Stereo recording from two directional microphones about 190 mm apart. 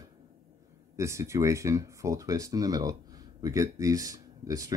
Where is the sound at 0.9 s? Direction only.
15° right (ahead or behind).